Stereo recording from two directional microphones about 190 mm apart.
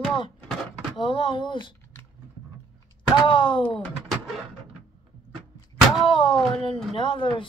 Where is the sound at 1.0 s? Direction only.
25° left (ahead or behind).